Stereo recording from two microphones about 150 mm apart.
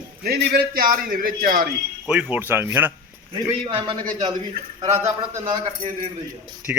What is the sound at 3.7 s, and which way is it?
Speech, 35° right (ahead or behind).